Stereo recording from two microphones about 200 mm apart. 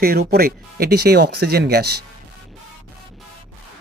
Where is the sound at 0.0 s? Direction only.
50° right (ahead or behind).